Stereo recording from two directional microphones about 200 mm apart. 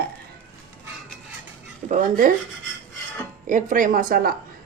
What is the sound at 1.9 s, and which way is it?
Speech, 40° right (ahead or behind).